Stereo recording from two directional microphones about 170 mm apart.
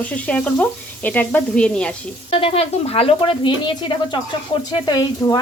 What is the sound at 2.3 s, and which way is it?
Speech, 35° left (ahead or behind).